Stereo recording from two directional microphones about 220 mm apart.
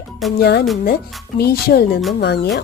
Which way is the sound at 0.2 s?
Centre (ahead or behind).